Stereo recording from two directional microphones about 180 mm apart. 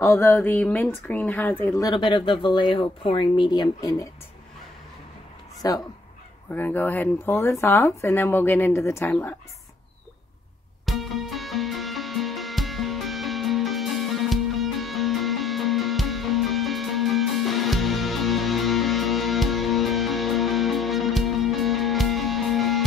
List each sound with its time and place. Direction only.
0.0 s speech: 15° left (ahead or behind)
1.9 s speech: 25° left (ahead or behind)
5.6 s speech: 20° left (ahead or behind)
10.9 s music: centre (ahead or behind)